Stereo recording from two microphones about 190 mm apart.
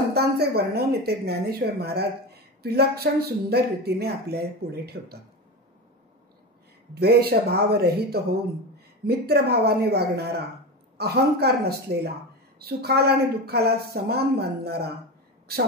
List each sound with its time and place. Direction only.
0.1 s a woman's voice: 55° right (ahead or behind)
6.9 s a woman's voice: 55° right (ahead or behind)